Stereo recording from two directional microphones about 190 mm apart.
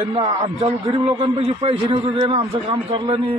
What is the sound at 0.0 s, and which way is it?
A man's voice, 30° right (ahead or behind).